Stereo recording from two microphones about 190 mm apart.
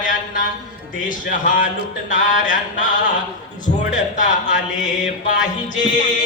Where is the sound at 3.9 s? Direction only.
40° left (ahead or behind).